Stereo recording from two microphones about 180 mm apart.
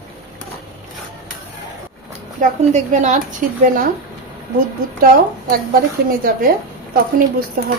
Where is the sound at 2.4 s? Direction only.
40° right (ahead or behind).